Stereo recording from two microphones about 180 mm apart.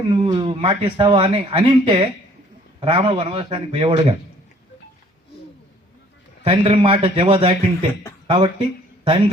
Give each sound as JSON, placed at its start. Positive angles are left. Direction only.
{"t": 0.1, "sound": "speech", "side_deg": -30}
{"t": 6.4, "sound": "speech", "side_deg": -30}